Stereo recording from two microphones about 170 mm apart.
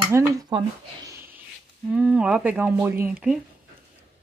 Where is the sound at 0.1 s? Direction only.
15° right (ahead or behind).